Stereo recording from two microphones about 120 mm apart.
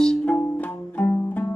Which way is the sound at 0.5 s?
10° left (ahead or behind).